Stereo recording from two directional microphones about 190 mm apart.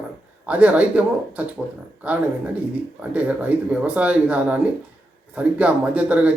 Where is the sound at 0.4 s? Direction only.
5° right (ahead or behind).